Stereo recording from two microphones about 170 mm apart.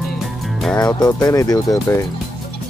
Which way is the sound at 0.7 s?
20° left (ahead or behind).